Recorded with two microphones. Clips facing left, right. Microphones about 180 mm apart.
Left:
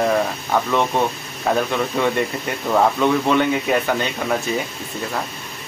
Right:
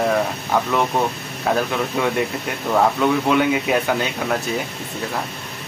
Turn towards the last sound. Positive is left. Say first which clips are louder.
# even
turn(degrees=0)  # may be behind; listen again after turning